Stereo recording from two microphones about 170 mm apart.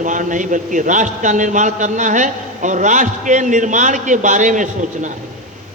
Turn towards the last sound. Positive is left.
turn(degrees=-50)  # may be behind; listen again after turning